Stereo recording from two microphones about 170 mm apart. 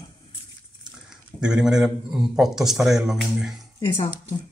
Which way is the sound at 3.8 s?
35° left (ahead or behind).